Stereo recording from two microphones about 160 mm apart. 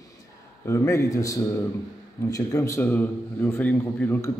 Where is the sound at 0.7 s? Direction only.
20° left (ahead or behind).